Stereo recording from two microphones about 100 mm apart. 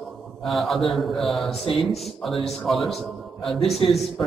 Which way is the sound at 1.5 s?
65° left (ahead or behind).